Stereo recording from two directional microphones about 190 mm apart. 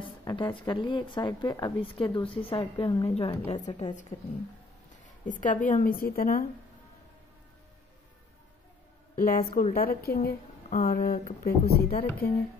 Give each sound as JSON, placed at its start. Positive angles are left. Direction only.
{"t": 0.0, "sound": "a woman's voice", "side_deg": 25}
{"t": 4.1, "sound": "a woman's voice", "side_deg": 40}
{"t": 9.1, "sound": "a woman's voice", "side_deg": 50}